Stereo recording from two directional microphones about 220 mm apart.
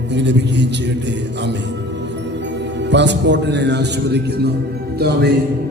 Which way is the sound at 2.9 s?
55° right (ahead or behind).